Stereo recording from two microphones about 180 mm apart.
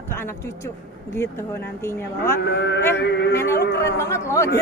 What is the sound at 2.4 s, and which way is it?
Speech, 70° left (ahead or behind).